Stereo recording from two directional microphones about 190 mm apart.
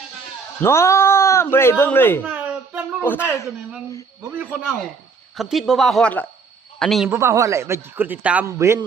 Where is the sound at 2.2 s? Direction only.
5° right (ahead or behind).